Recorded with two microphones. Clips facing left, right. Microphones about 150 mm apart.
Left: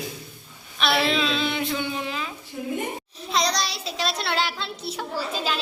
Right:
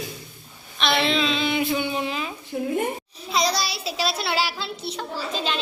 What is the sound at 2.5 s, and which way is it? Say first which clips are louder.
Speech: right 6 dB; 60° right (ahead or behind).